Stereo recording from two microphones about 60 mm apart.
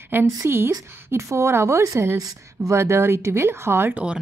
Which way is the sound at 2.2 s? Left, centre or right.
Right.